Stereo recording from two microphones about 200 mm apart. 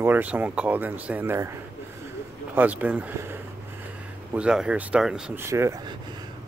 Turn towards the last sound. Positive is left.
turn(degrees=-15)  # may be behind; listen again after turning